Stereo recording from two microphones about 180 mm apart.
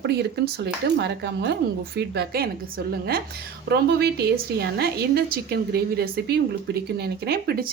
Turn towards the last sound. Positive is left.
turn(degrees=-60)  # may be behind; listen again after turning